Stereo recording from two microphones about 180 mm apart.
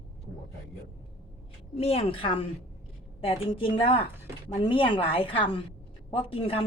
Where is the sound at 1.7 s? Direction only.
35° left (ahead or behind).